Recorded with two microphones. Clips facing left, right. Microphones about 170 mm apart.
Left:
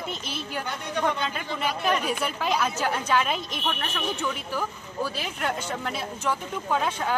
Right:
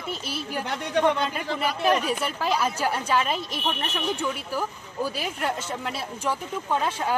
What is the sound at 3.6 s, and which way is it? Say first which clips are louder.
Speech: right 1 dB; 15° right (ahead or behind).